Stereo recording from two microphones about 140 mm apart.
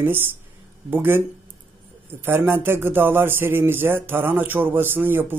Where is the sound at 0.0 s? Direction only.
15° right (ahead or behind).